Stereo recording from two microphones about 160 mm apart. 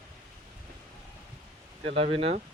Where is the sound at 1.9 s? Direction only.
35° right (ahead or behind).